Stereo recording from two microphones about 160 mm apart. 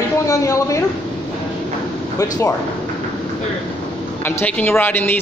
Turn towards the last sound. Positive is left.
turn(degrees=10)  # may be behind; listen again after turning